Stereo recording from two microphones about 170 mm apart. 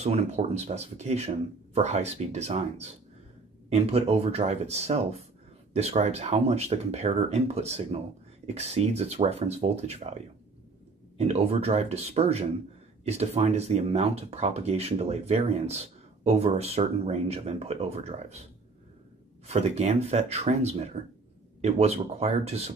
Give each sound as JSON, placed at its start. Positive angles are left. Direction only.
{"t": 0.0, "sound": "speech", "side_deg": -40}
{"t": 19.4, "sound": "speech", "side_deg": -40}